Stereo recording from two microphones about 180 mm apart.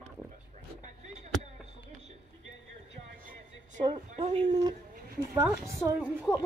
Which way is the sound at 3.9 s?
35° right (ahead or behind).